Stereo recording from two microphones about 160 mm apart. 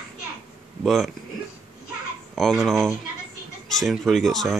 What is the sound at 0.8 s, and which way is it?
Speech, centre (ahead or behind).